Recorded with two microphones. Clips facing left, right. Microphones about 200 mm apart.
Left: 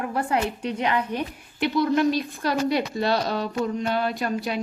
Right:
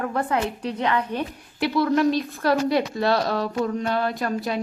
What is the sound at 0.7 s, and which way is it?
Speech, 15° left (ahead or behind).